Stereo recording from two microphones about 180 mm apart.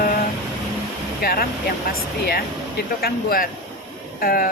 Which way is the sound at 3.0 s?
55° left (ahead or behind).